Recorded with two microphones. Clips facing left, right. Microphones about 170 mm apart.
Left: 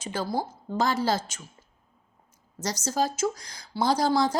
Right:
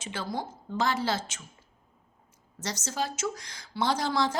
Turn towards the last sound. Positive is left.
turn(degrees=35)  # may be behind; listen again after turning